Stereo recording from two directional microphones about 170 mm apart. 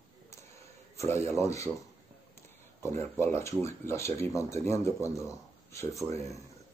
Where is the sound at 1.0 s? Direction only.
15° left (ahead or behind).